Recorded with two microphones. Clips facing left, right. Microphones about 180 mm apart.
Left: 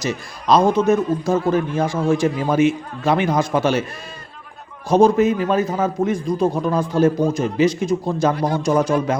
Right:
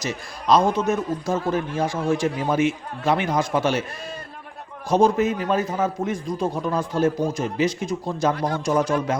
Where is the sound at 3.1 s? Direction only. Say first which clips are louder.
Left 3 dB; 90° left.